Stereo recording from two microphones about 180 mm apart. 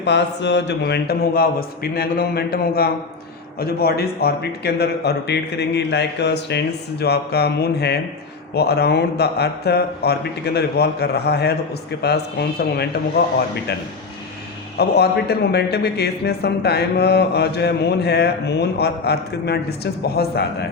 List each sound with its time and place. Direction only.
0.0 s a man's voice: 75° left (ahead or behind)
14.8 s a man's voice: 65° left (ahead or behind)